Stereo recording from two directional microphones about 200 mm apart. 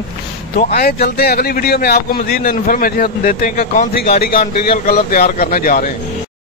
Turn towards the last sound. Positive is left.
turn(degrees=45)  # may be behind; listen again after turning